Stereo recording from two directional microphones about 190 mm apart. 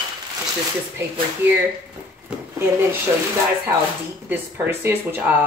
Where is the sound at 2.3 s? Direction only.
5° right (ahead or behind).